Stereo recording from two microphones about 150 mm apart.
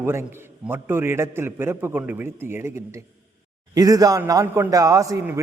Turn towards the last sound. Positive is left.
turn(degrees=-20)  # may be behind; listen again after turning